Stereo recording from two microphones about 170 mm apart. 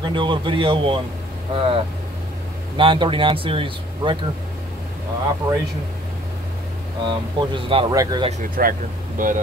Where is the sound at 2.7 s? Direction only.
30° right (ahead or behind).